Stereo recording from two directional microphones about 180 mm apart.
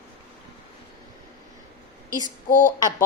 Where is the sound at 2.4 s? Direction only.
45° left (ahead or behind).